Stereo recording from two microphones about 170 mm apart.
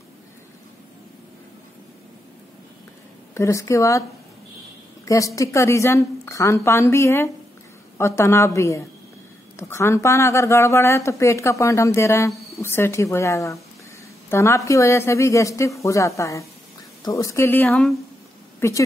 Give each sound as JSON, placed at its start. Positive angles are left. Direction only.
{"t": 3.3, "sound": "speech", "side_deg": 15}
{"t": 5.0, "sound": "speech", "side_deg": 20}
{"t": 18.6, "sound": "speech", "side_deg": 15}